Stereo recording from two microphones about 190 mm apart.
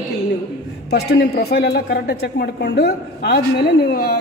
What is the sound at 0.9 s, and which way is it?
A man's voice, 60° left (ahead or behind).